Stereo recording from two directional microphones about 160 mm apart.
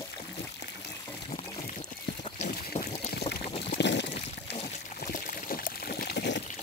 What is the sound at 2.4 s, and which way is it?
Boat, 50° left (ahead or behind).